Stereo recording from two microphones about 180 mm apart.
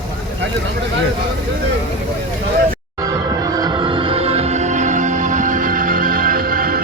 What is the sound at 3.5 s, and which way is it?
Music, 25° right (ahead or behind).